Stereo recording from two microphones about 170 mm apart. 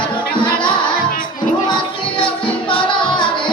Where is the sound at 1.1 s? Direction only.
55° left (ahead or behind).